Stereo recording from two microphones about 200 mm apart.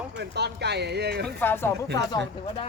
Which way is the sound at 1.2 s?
10° left (ahead or behind).